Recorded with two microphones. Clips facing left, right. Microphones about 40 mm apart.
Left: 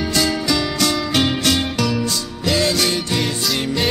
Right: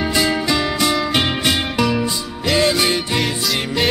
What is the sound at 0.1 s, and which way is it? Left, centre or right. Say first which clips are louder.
Music: even; right.